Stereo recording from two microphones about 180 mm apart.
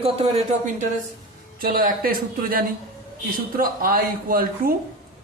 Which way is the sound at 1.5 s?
55° right (ahead or behind).